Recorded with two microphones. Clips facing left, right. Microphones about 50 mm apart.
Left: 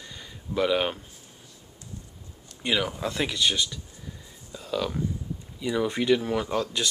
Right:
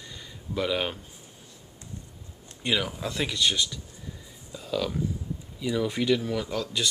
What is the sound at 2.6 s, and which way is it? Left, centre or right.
Speech, centre.